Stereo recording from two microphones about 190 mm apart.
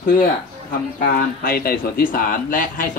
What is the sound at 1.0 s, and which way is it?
Speech, 50° left (ahead or behind).